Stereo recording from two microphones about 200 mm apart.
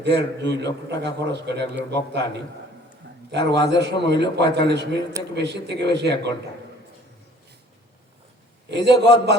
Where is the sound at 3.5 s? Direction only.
60° right (ahead or behind).